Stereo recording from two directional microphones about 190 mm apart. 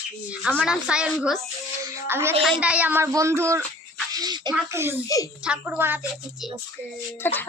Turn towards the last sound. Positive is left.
turn(degrees=10)  # may be behind; listen again after turning